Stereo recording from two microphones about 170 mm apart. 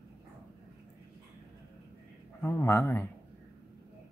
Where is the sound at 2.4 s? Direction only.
15° left (ahead or behind).